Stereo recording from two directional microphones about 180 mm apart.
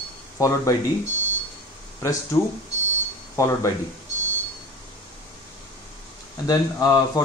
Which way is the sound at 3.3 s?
15° left (ahead or behind).